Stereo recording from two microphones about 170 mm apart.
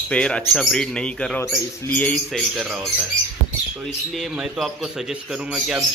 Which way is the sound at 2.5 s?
Centre (ahead or behind).